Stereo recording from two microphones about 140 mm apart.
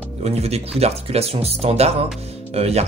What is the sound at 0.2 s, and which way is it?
Speech, 50° right (ahead or behind).